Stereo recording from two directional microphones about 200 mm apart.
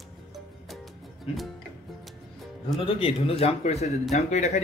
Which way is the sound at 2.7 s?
30° left (ahead or behind).